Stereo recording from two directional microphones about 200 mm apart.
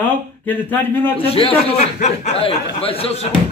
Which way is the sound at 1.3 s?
30° left (ahead or behind).